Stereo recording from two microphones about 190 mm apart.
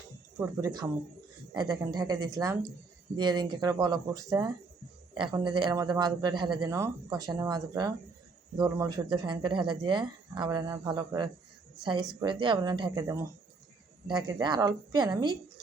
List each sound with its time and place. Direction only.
0.3 s speech: 15° right (ahead or behind)